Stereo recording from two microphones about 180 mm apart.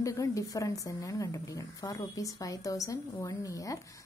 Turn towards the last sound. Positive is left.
turn(degrees=20)  # may be behind; listen again after turning